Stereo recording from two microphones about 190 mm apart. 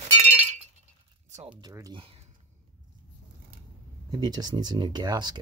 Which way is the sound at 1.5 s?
20° right (ahead or behind).